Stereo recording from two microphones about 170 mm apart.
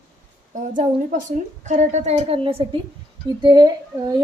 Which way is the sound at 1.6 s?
45° right (ahead or behind).